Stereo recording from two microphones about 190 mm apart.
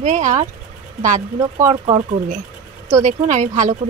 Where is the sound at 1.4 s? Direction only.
15° right (ahead or behind).